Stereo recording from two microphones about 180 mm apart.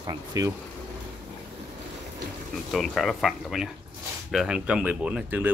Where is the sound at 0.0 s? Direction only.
20° right (ahead or behind).